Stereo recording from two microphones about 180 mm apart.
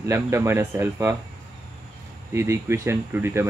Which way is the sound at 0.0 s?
15° right (ahead or behind).